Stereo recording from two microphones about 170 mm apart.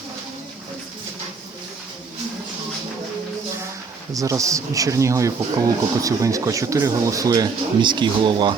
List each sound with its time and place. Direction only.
4.1 s speech: 20° right (ahead or behind)